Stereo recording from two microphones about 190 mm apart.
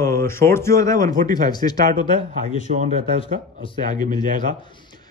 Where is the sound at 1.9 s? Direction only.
40° right (ahead or behind).